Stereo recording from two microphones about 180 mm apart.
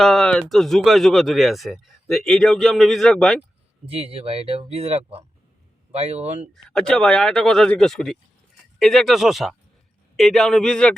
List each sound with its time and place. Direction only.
0.0 s speech: 5° left (ahead or behind)
3.9 s speech: 35° right (ahead or behind)
6.5 s speech: 5° left (ahead or behind)